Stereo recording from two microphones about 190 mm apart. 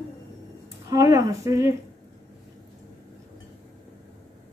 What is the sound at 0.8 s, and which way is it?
Speech, 15° right (ahead or behind).